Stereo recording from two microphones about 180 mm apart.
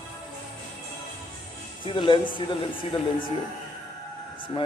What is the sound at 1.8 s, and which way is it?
A man's voice, 30° left (ahead or behind).